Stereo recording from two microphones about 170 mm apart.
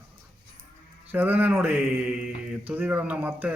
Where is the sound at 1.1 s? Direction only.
10° right (ahead or behind).